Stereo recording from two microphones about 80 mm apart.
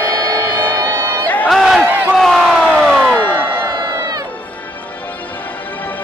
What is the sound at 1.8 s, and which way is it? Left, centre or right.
Crowd, right.